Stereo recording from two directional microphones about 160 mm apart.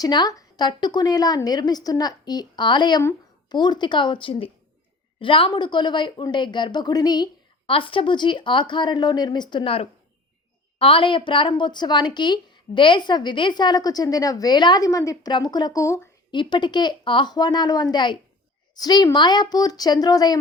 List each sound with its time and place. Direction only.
0.0 s a woman's voice: 25° left (ahead or behind)